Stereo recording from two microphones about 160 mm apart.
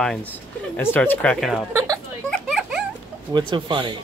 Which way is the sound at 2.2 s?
Centre (ahead or behind).